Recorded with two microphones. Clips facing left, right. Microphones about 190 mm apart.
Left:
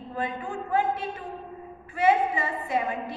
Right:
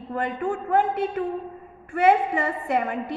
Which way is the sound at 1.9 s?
60° right (ahead or behind).